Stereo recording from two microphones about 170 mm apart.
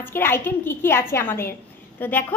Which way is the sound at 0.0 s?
15° left (ahead or behind).